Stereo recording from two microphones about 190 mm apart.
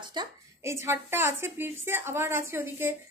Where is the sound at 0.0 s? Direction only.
20° right (ahead or behind).